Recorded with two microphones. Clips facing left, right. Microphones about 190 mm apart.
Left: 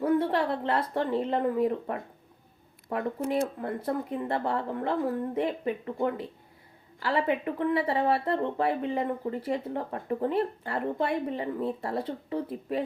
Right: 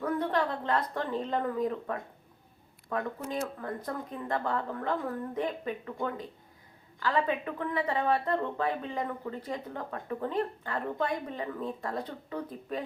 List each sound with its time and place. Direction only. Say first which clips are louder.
0.0 s speech: left 4 dB; 30° left (ahead or behind)